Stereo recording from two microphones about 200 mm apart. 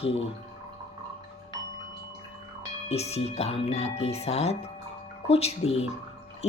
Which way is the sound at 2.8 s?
30° left (ahead or behind).